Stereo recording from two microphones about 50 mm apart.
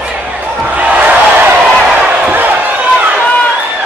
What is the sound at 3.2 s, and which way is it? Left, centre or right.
Run, left.